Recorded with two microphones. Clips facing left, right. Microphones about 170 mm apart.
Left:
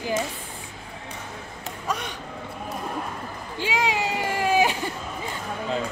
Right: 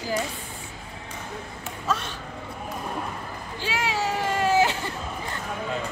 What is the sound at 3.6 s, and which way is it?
Cat, 15° left (ahead or behind).